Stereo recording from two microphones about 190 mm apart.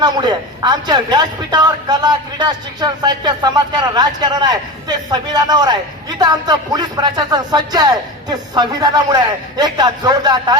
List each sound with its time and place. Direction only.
0.0 s a man's voice: 20° right (ahead or behind)